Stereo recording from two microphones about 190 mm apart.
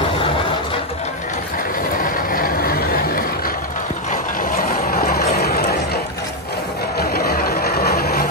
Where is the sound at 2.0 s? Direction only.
45° left (ahead or behind).